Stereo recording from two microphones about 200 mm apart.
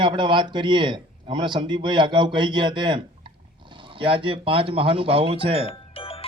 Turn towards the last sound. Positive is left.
turn(degrees=30)  # may be behind; listen again after turning